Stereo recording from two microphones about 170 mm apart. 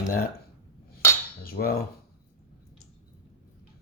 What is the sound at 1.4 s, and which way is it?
Speech, 60° left (ahead or behind).